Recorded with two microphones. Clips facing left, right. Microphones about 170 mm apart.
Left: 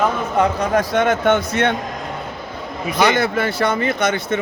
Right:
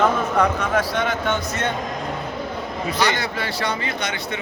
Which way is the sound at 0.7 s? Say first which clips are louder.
Left 5 dB; 50° left (ahead or behind).